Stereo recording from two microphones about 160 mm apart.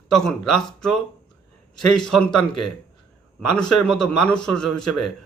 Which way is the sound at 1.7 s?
5° left (ahead or behind).